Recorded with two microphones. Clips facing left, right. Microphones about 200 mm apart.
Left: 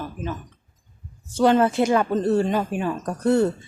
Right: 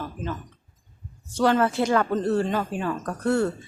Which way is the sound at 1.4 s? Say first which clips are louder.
Left 3 dB; 20° left (ahead or behind).